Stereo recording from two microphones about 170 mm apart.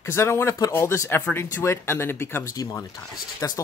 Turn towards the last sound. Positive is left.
turn(degrees=15)  # may be behind; listen again after turning